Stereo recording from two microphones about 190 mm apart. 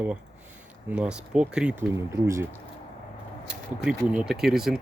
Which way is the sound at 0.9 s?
5° right (ahead or behind).